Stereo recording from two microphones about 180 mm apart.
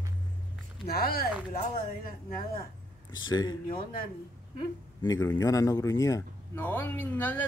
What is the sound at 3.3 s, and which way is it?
Speech, 25° left (ahead or behind).